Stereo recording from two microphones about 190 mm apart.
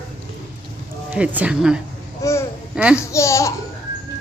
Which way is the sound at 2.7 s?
5° right (ahead or behind).